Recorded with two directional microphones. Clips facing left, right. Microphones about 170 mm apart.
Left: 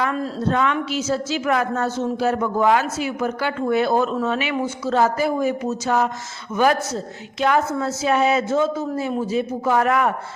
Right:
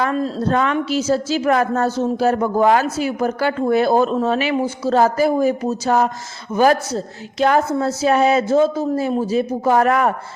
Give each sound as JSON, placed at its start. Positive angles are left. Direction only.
{"t": 0.0, "sound": "a woman's voice", "side_deg": -35}